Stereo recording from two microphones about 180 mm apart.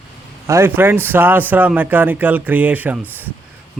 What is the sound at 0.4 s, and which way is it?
A man's voice, 15° right (ahead or behind).